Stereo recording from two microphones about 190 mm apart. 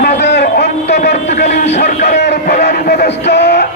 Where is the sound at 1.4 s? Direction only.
40° left (ahead or behind).